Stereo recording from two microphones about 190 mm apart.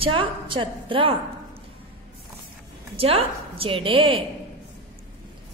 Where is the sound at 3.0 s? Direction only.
30° right (ahead or behind).